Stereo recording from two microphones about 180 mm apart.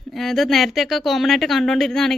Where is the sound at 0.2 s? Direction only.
Centre (ahead or behind).